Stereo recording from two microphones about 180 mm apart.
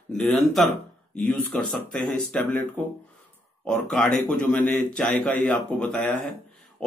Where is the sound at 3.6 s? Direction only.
5° left (ahead or behind).